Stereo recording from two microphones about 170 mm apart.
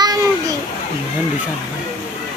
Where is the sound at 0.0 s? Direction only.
20° right (ahead or behind).